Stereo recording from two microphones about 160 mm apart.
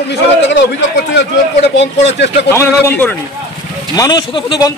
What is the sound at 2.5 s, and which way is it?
A man's voice, 15° left (ahead or behind).